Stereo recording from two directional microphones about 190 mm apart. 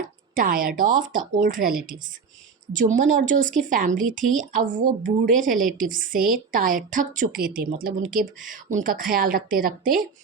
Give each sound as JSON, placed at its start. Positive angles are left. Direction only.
{"t": 0.3, "sound": "a woman's voice", "side_deg": -45}